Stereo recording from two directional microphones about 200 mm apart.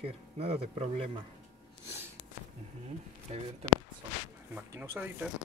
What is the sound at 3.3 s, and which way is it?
Speech, 35° right (ahead or behind).